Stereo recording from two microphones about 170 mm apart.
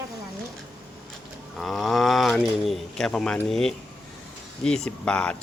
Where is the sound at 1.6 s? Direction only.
Centre (ahead or behind).